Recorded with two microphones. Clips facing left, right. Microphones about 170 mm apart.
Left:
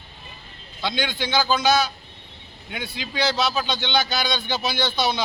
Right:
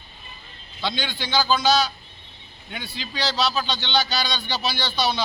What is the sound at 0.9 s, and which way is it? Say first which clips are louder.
Speech: left 2 dB; 15° left (ahead or behind).